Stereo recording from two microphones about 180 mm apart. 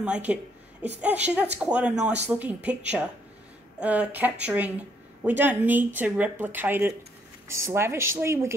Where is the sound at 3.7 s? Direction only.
10° right (ahead or behind).